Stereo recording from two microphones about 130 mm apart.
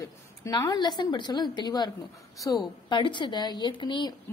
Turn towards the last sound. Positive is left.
turn(degrees=35)  # may be behind; listen again after turning